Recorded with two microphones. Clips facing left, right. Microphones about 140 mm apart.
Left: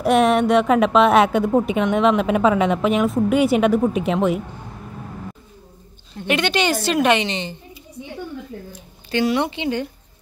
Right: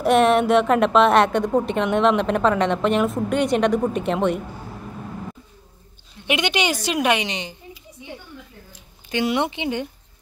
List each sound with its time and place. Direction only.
0.0 s a woman's voice: centre (ahead or behind)
6.2 s a woman's voice: 15° right (ahead or behind)
9.1 s speech: 20° right (ahead or behind)